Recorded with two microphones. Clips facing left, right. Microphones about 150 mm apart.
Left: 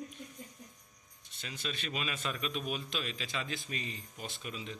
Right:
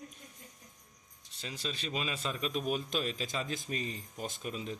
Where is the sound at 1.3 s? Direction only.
35° right (ahead or behind).